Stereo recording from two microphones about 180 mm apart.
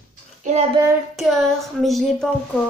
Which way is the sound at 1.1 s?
Centre (ahead or behind).